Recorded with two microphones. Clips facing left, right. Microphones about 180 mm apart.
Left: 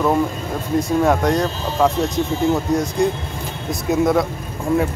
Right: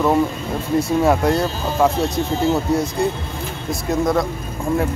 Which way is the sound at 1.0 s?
5° right (ahead or behind).